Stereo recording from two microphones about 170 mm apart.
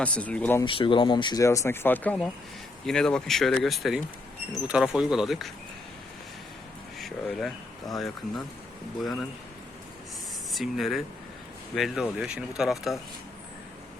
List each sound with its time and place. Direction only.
0.0 s speech: 10° left (ahead or behind)
0.6 s speech: 30° left (ahead or behind); by 5.5 s centre (ahead or behind)
7.0 s speech: centre (ahead or behind)
10.5 s speech: centre (ahead or behind)